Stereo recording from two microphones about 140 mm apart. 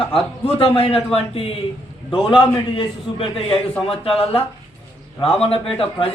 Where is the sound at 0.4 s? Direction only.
40° left (ahead or behind).